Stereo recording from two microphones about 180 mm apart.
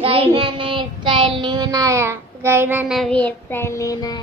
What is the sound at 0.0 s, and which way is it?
Child singing, 30° right (ahead or behind).